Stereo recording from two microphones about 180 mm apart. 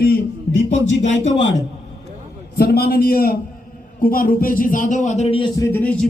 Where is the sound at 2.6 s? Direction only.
60° left (ahead or behind); by 5.5 s 30° left (ahead or behind).